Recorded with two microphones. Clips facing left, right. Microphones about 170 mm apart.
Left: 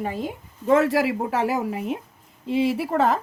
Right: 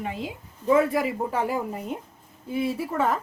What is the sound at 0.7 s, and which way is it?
Speech, 90° left.